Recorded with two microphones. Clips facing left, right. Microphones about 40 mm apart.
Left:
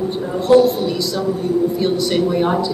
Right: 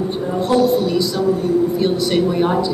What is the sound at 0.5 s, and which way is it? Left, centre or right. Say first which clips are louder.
Speech: left 5 dB; centre.